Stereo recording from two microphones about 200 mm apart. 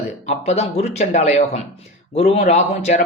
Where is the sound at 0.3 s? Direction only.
35° left (ahead or behind).